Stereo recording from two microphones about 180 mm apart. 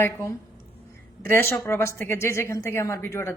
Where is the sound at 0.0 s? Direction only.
15° left (ahead or behind).